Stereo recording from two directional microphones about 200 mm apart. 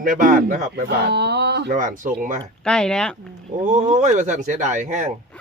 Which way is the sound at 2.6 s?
5° left (ahead or behind).